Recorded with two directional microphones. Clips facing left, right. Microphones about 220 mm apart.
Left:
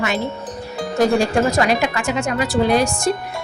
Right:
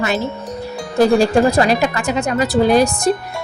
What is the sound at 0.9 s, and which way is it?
Speech, 35° right (ahead or behind).